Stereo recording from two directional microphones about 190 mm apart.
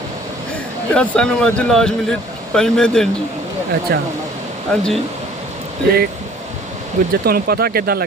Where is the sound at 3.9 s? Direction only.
55° right (ahead or behind).